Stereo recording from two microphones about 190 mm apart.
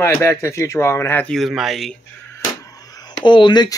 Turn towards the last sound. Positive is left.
turn(degrees=25)  # may be behind; listen again after turning